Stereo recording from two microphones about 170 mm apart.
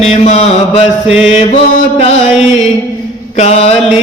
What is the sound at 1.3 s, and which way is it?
Chant, 45° left (ahead or behind).